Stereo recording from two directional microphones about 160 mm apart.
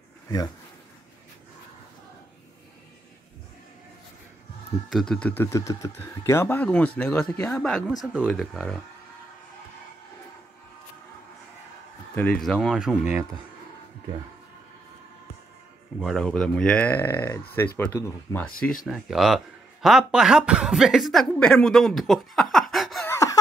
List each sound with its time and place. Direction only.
4.8 s speech: centre (ahead or behind)
12.2 s speech: 5° left (ahead or behind)
16.0 s speech: 5° left (ahead or behind)
18.9 s speech: centre (ahead or behind)
23.0 s a sound: 20° left (ahead or behind)